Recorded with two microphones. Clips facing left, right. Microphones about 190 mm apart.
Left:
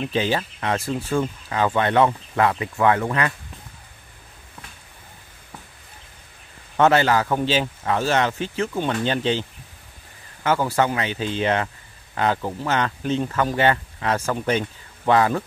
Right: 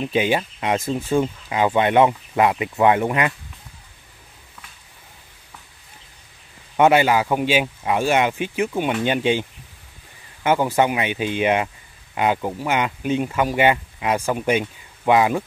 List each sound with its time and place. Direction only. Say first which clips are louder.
0.0 s speech: right 2 dB; 15° right (ahead or behind)
6.8 s speech: right 2 dB; 15° right (ahead or behind)